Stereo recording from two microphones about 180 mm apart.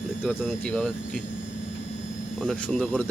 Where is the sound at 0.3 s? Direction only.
5° left (ahead or behind).